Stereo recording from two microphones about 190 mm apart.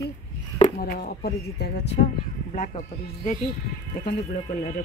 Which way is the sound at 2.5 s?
40° left (ahead or behind).